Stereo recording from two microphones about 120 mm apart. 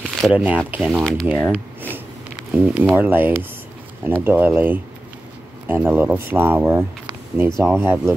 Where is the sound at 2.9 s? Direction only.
15° right (ahead or behind).